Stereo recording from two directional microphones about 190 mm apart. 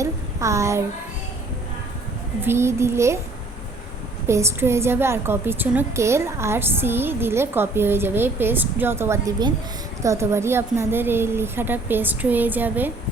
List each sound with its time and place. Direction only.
0.0 s a sound: 15° right (ahead or behind)
2.4 s a woman's voice: 15° right (ahead or behind)
4.3 s a woman's voice: 15° right (ahead or behind)